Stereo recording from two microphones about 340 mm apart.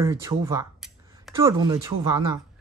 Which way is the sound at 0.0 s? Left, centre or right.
Centre.